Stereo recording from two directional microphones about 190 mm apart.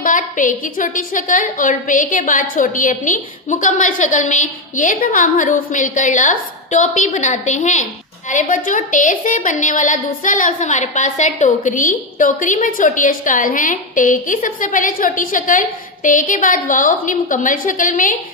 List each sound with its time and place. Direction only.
0.0 s a woman's voice: 45° left (ahead or behind)